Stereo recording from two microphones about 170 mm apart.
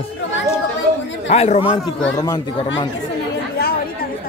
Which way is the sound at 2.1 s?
25° left (ahead or behind).